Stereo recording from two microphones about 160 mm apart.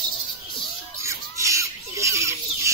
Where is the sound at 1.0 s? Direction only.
20° right (ahead or behind).